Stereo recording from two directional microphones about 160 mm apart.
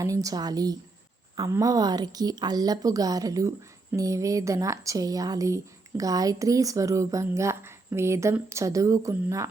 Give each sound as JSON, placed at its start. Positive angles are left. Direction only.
{"t": 0.0, "sound": "speech", "side_deg": -20}